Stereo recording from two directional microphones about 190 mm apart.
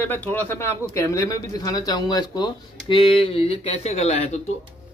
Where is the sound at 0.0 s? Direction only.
10° left (ahead or behind).